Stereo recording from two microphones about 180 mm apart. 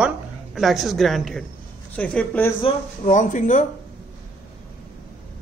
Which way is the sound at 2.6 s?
40° left (ahead or behind).